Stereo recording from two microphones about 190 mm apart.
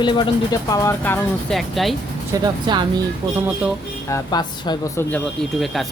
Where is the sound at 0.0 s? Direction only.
25° left (ahead or behind); by 2.0 s centre (ahead or behind).